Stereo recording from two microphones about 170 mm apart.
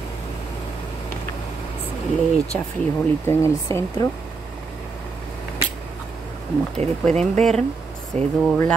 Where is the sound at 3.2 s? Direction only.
15° left (ahead or behind).